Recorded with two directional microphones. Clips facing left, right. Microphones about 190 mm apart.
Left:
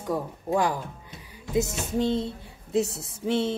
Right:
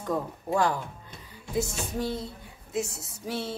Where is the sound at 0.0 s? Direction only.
15° left (ahead or behind).